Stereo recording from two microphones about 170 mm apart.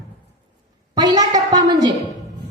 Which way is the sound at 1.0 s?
25° right (ahead or behind).